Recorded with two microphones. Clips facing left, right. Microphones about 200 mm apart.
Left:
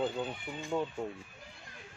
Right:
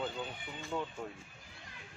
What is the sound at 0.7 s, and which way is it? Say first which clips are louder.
Speech: left 5 dB; 20° left (ahead or behind).